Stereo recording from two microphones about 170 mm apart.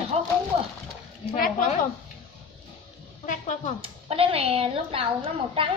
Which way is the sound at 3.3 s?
45° left (ahead or behind).